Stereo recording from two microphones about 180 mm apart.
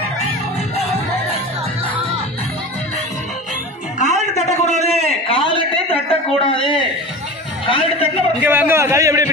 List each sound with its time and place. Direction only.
4.0 s a sound: 40° left (ahead or behind)
7.6 s a man's voice: 30° left (ahead or behind)
8.4 s a man's voice: 10° right (ahead or behind)